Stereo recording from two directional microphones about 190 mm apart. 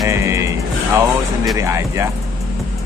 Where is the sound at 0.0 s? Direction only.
15° right (ahead or behind).